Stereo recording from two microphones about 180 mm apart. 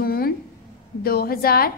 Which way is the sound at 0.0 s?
55° left (ahead or behind).